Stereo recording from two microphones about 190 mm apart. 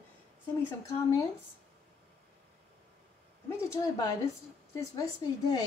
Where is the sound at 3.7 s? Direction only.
15° left (ahead or behind).